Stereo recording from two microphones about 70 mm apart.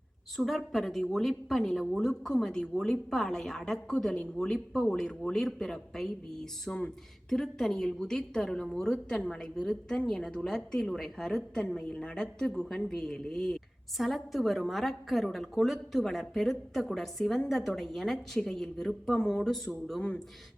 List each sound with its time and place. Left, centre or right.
0.3 s a woman's voice: centre
6.7 s speech: left
7.3 s a woman's voice: centre
20.0 s a woman's voice: centre